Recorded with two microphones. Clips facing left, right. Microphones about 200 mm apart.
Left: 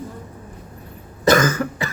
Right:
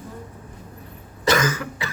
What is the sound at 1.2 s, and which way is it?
Cough, 45° left (ahead or behind).